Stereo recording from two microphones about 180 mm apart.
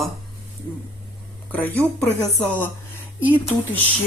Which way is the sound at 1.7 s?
10° left (ahead or behind).